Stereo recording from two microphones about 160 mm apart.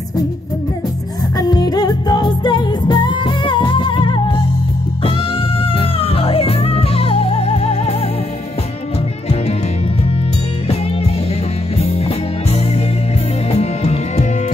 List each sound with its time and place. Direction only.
1.3 s music: 25° left (ahead or behind)
11.8 s music: 40° left (ahead or behind)